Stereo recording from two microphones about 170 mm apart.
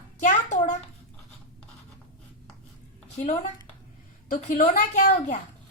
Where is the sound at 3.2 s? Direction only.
45° left (ahead or behind).